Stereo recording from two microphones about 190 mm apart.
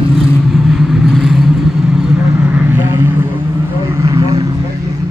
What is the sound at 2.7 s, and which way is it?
Vehicle, 10° right (ahead or behind).